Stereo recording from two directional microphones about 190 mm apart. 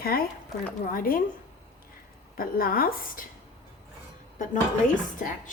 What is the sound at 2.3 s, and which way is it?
Speech, 50° left (ahead or behind).